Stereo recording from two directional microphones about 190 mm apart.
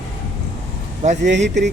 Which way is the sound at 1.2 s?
65° right (ahead or behind).